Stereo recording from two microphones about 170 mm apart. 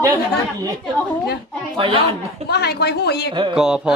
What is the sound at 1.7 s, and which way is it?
Speech, 30° right (ahead or behind).